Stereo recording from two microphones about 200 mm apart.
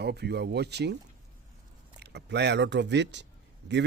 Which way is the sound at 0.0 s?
55° right (ahead or behind).